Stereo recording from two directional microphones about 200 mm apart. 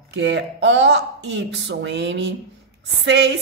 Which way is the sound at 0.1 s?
60° right (ahead or behind).